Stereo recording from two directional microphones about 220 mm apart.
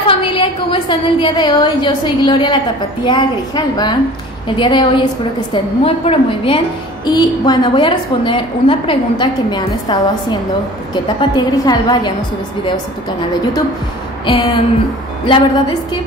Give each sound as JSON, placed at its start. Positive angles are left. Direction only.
{"t": 0.0, "sound": "a woman's voice", "side_deg": 25}
{"t": 11.1, "sound": "a woman's voice", "side_deg": 20}
{"t": 14.2, "sound": "a woman's voice", "side_deg": 20}